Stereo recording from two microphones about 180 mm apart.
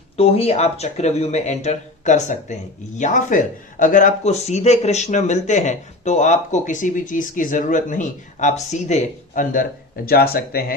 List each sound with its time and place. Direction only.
0.2 s speech: 35° left (ahead or behind)
10.1 s speech: 60° left (ahead or behind)